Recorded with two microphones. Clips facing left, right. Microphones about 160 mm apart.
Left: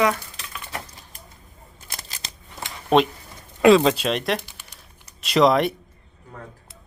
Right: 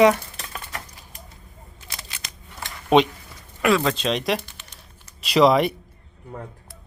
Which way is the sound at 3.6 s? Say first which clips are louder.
Left 6 dB; 25° left (ahead or behind).